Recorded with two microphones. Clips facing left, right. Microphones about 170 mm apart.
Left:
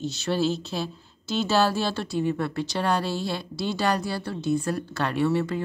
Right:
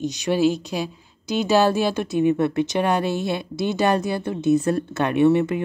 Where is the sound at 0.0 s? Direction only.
15° right (ahead or behind).